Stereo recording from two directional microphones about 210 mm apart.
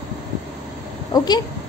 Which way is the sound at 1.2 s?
20° left (ahead or behind).